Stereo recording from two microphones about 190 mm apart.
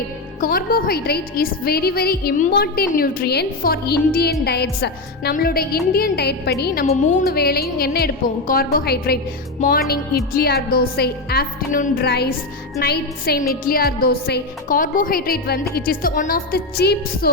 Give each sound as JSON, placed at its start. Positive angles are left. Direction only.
{"t": 0.3, "sound": "a woman's voice", "side_deg": 50}
{"t": 6.8, "sound": "speech", "side_deg": 40}
{"t": 7.3, "sound": "a woman's voice", "side_deg": 55}